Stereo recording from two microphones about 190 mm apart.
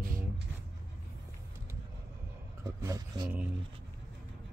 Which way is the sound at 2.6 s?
15° right (ahead or behind).